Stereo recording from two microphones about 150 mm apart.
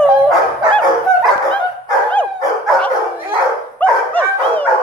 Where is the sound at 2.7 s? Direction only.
5° left (ahead or behind).